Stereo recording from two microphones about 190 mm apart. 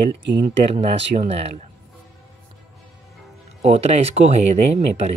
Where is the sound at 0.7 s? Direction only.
35° right (ahead or behind).